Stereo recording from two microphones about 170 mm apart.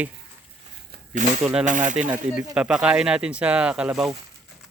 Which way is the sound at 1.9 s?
5° right (ahead or behind).